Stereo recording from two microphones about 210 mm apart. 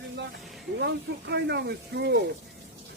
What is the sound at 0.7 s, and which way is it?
Speech, 50° right (ahead or behind).